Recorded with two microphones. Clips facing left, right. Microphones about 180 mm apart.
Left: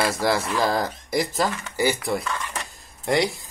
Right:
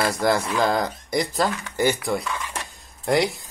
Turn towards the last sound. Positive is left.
turn(degrees=0)  # may be behind; listen again after turning